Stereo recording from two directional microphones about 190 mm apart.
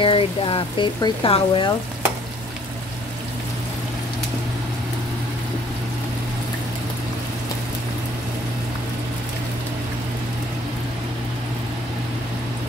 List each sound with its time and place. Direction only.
0.0 s speech: 25° left (ahead or behind)